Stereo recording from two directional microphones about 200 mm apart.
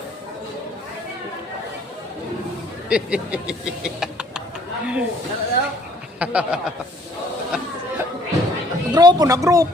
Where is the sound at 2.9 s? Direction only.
5° right (ahead or behind).